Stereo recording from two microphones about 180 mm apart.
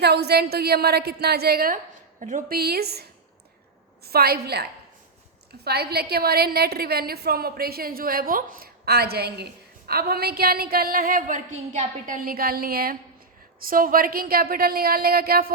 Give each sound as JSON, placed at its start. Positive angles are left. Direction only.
{"t": 0.0, "sound": "a woman's voice", "side_deg": -65}